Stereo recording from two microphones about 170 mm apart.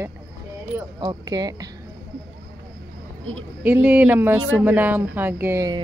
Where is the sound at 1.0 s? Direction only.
25° right (ahead or behind).